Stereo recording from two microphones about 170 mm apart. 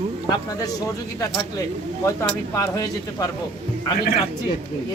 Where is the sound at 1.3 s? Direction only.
20° left (ahead or behind).